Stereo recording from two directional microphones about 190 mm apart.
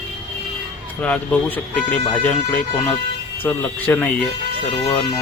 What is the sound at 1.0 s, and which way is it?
Speech, 5° left (ahead or behind).